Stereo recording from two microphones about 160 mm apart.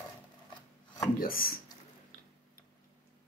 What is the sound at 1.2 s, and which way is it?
Speech, 60° left (ahead or behind).